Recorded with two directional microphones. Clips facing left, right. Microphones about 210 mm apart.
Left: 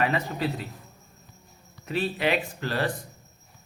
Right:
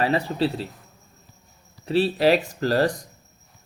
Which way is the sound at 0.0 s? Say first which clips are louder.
Right 4 dB; 30° right (ahead or behind).